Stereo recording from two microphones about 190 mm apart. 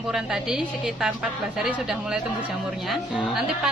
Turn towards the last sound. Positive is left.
turn(degrees=0)  # may be behind; listen again after turning